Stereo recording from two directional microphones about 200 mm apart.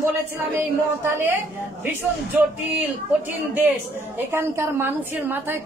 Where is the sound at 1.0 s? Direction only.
10° right (ahead or behind).